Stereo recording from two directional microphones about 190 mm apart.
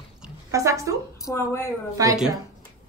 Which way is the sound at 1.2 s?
15° left (ahead or behind).